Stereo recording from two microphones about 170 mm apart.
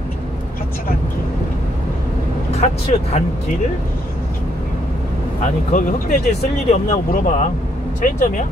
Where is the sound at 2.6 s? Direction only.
40° left (ahead or behind).